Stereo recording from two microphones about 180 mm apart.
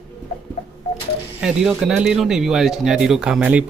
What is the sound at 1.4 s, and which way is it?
Speech, 5° right (ahead or behind).